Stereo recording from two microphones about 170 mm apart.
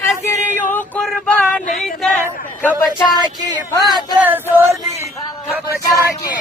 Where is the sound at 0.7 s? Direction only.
5° left (ahead or behind).